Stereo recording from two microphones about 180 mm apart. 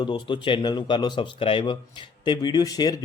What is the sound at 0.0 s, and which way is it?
A man's voice, 25° left (ahead or behind).